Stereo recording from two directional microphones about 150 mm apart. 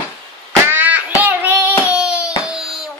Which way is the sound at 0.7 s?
10° right (ahead or behind).